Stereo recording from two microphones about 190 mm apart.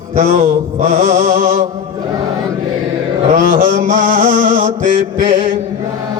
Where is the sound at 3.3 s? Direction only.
45° right (ahead or behind).